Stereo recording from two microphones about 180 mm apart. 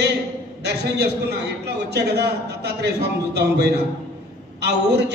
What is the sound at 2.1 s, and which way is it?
A man's voice, 65° right (ahead or behind).